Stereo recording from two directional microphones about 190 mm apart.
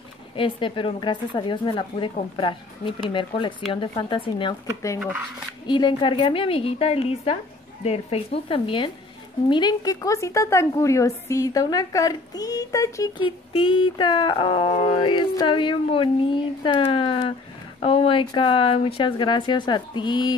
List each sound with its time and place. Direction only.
0.4 s a woman's voice: 25° left (ahead or behind)